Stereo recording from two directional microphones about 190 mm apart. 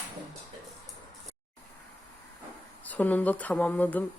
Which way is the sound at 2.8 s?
10° left (ahead or behind).